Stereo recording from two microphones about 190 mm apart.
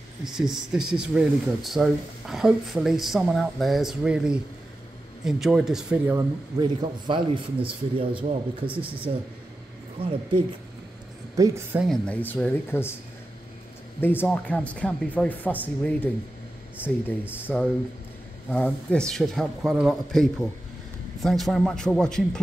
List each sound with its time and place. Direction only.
0.2 s speech: centre (ahead or behind)
6.6 s a man's voice: 25° right (ahead or behind)
10.0 s speech: 10° right (ahead or behind)
11.3 s speech: 15° right (ahead or behind)
11.9 s speech: 10° left (ahead or behind)
14.0 s speech: 10° left (ahead or behind)
16.7 s speech: 5° right (ahead or behind)